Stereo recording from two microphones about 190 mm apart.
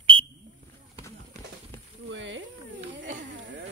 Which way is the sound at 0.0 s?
30° right (ahead or behind).